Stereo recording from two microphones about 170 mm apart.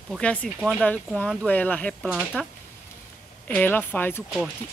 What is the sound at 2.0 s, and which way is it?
Speech, centre (ahead or behind).